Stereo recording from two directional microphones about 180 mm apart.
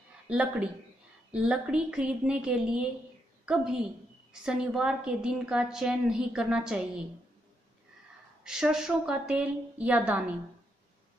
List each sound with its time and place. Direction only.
0.3 s a woman's voice: 5° right (ahead or behind)
8.5 s a woman's voice: 5° right (ahead or behind)